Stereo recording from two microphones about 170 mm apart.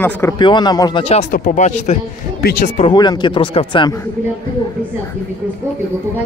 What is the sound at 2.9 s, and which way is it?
Speech, 25° left (ahead or behind).